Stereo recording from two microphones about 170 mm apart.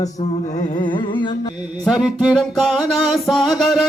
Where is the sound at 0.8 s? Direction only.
30° left (ahead or behind).